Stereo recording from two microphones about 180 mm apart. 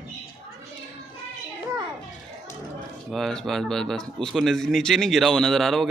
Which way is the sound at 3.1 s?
Centre (ahead or behind).